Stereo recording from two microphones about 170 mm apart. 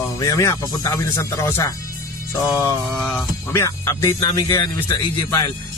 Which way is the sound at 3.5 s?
15° left (ahead or behind).